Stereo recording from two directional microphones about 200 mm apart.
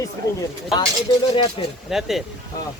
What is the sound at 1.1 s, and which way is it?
Speech, 25° left (ahead or behind).